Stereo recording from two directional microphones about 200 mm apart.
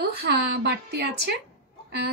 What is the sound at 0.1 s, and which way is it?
A woman's voice, 55° right (ahead or behind).